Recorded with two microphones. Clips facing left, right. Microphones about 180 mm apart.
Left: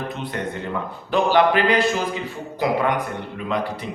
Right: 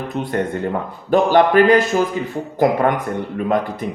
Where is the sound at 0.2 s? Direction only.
50° right (ahead or behind).